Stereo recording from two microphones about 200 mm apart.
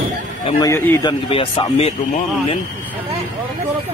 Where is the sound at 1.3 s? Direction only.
30° left (ahead or behind).